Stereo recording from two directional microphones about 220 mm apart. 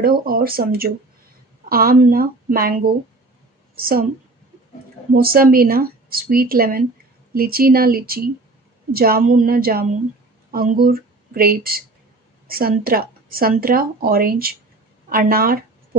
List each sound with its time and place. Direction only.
0.0 s a woman's voice: 45° right (ahead or behind)
5.1 s speech: 45° right (ahead or behind)